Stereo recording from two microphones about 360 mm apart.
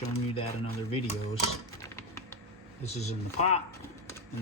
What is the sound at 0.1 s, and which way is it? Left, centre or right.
Speech, centre.